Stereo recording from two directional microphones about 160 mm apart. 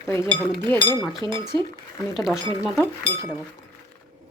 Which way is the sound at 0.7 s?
10° left (ahead or behind).